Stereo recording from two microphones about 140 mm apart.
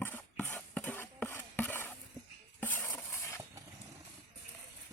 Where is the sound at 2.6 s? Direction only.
15° left (ahead or behind).